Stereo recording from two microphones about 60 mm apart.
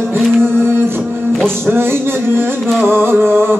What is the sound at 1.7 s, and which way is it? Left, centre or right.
Music, right.